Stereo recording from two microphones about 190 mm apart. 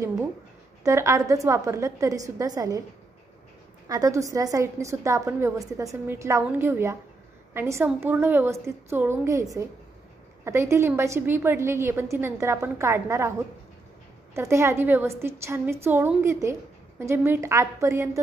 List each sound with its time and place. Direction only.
0.8 s a woman's voice: 15° right (ahead or behind)
3.9 s a woman's voice: 15° right (ahead or behind)
14.3 s a woman's voice: 15° right (ahead or behind)